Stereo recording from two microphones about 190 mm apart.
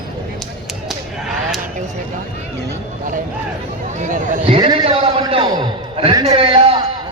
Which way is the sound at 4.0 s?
40° right (ahead or behind).